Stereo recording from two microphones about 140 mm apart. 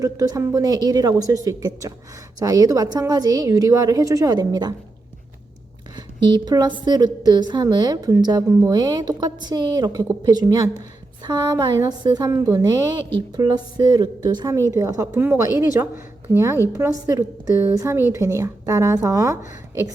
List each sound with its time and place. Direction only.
0.0 s a woman's voice: 25° right (ahead or behind)
6.0 s a woman's voice: 30° right (ahead or behind)
17.1 s a woman's voice: 20° right (ahead or behind)